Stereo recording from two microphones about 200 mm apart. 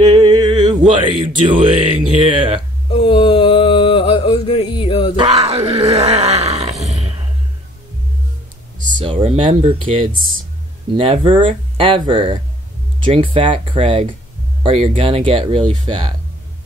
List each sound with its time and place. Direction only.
0.0 s speech: 20° right (ahead or behind)
2.9 s mantra: 25° left (ahead or behind)
5.1 s speech: 30° right (ahead or behind)
6.9 s a sound: 35° right (ahead or behind)
8.9 s speech: 30° right (ahead or behind)
11.0 s speech: 25° right (ahead or behind)